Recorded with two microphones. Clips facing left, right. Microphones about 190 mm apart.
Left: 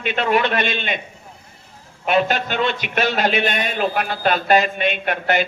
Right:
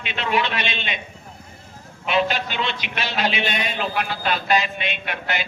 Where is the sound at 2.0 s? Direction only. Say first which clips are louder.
Left 3 dB; 50° left (ahead or behind).